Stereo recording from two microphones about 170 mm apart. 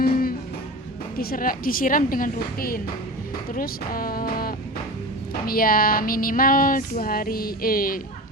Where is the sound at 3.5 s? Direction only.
55° left (ahead or behind).